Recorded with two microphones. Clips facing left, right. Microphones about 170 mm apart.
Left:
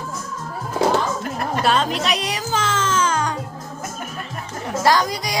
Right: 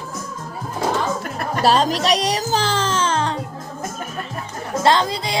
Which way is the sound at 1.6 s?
35° right (ahead or behind).